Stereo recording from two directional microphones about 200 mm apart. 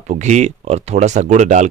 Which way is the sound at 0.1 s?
35° right (ahead or behind).